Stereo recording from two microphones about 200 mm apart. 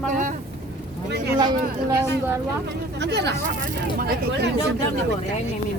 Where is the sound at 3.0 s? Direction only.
55° right (ahead or behind).